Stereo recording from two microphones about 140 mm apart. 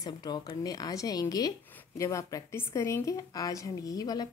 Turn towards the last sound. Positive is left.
turn(degrees=25)  # may be behind; listen again after turning